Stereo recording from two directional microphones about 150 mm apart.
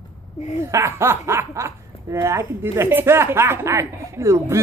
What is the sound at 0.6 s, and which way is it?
Speech, 20° right (ahead or behind).